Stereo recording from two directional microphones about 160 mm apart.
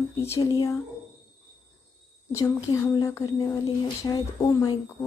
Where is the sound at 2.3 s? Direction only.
20° left (ahead or behind).